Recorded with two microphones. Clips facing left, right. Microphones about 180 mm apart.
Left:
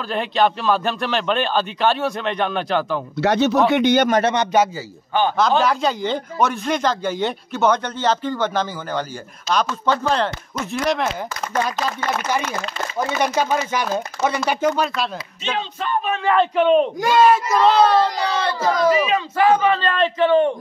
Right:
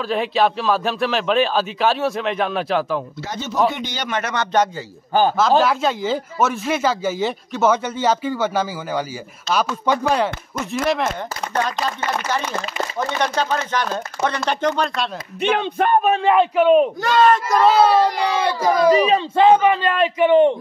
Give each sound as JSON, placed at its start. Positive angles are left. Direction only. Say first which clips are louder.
{"t": 0.1, "sound": "speech", "louder": "even", "side_deg": 0}
{"t": 3.2, "sound": "speech", "louder": "left 7 dB", "side_deg": 70}
{"t": 3.7, "sound": "speech", "louder": "left 13 dB", "side_deg": 60}
{"t": 4.1, "sound": "speech", "louder": "left 6 dB", "side_deg": 25}
{"t": 5.6, "sound": "speech", "louder": "right 1 dB", "side_deg": 0}
{"t": 12.9, "sound": "speech", "louder": "left 2 dB", "side_deg": 5}
{"t": 15.4, "sound": "a sound", "louder": "right 7 dB", "side_deg": -60}
{"t": 16.3, "sound": "speech", "louder": "even", "side_deg": -5}
{"t": 17.0, "sound": "speech", "louder": "left 1 dB", "side_deg": 10}
{"t": 18.9, "sound": "speech", "louder": "right 3 dB", "side_deg": -35}